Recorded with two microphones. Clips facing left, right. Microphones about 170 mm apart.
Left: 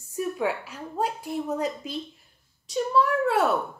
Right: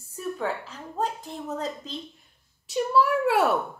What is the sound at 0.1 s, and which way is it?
Speech, 10° left (ahead or behind).